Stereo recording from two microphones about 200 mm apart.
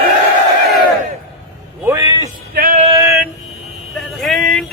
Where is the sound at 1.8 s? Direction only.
15° right (ahead or behind).